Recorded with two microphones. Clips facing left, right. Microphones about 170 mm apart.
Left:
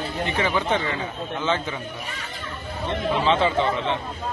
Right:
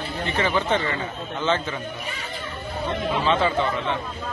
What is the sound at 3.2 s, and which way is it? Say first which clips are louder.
Speech: left 1 dB; 25° left (ahead or behind).